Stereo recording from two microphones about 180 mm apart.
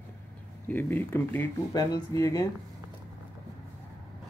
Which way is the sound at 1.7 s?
20° left (ahead or behind).